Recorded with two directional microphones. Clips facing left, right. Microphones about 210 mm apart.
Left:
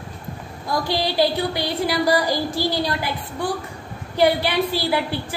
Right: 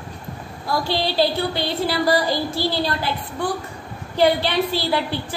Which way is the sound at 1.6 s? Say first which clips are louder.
Even; 25° right (ahead or behind).